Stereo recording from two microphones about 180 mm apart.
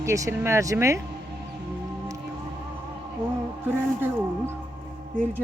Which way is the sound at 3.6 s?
10° right (ahead or behind).